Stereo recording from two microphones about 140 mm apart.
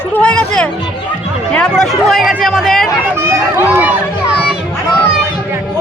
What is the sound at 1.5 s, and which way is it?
Speech, 5° left (ahead or behind).